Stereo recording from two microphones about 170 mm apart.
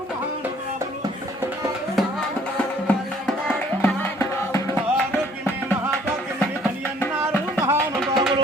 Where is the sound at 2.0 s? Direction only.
Centre (ahead or behind).